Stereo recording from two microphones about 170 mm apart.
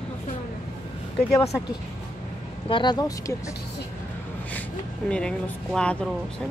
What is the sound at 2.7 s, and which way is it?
Speech, 25° left (ahead or behind).